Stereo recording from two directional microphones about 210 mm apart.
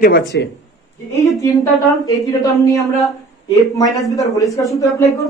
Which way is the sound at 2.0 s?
15° left (ahead or behind).